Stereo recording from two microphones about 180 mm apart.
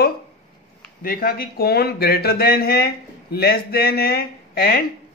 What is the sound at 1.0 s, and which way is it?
A man's voice, 55° left (ahead or behind).